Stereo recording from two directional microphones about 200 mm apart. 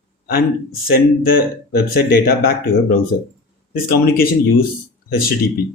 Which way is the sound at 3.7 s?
50° left (ahead or behind).